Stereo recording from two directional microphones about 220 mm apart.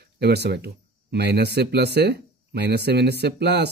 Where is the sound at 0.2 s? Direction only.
50° right (ahead or behind).